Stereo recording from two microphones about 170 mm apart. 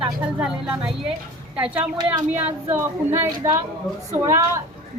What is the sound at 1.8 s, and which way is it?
Speech, 25° right (ahead or behind).